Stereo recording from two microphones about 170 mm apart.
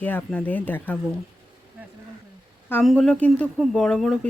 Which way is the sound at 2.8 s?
Centre (ahead or behind).